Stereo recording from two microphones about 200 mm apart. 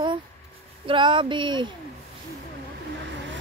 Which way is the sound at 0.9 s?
25° right (ahead or behind).